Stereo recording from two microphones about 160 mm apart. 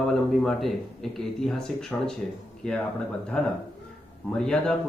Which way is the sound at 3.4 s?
5° left (ahead or behind).